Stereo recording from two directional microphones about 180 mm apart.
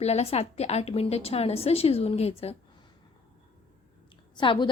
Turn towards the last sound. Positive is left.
turn(degrees=25)  # may be behind; listen again after turning